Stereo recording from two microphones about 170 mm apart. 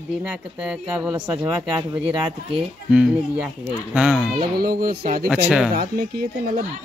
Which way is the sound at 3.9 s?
5° right (ahead or behind).